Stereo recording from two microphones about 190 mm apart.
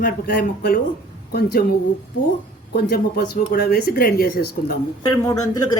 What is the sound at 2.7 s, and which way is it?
Speech, 55° left (ahead or behind).